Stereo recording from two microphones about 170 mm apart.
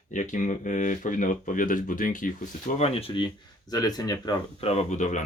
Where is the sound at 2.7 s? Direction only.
35° left (ahead or behind).